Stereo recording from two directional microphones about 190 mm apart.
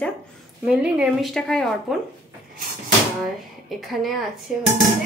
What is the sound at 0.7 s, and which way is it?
A woman's voice, 5° right (ahead or behind).